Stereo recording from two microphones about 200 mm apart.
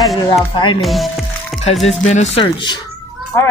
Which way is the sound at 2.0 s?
35° left (ahead or behind).